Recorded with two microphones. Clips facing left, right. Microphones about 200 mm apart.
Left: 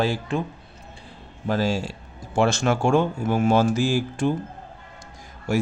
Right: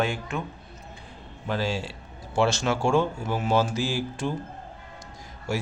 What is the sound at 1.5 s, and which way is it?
Speech, 45° left (ahead or behind).